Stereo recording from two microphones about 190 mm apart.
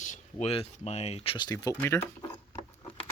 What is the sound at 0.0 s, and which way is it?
Speech, 40° left (ahead or behind).